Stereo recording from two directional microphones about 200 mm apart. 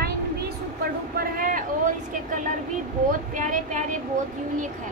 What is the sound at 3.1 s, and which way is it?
Speech, 40° right (ahead or behind).